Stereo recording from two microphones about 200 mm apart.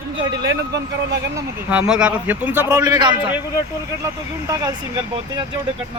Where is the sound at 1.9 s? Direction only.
5° right (ahead or behind).